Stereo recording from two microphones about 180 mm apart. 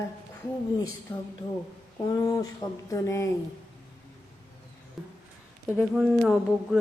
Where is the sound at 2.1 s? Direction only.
20° left (ahead or behind).